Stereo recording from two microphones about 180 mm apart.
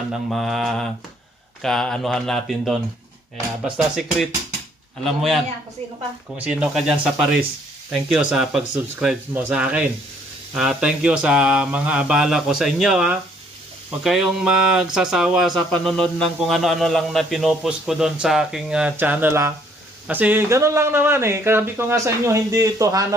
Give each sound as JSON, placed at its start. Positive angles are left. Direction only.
{"t": 0.1, "sound": "speech", "side_deg": 0}